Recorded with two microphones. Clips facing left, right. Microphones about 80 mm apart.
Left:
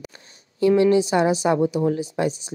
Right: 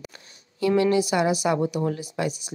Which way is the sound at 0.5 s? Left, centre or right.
Left.